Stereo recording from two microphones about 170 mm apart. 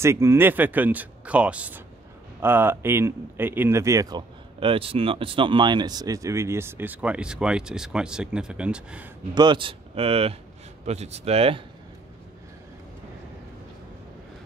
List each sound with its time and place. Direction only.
0.0 s speech: 15° right (ahead or behind)
4.6 s speech: 30° right (ahead or behind); by 9.1 s 5° right (ahead or behind)
9.3 s speech: 25° right (ahead or behind)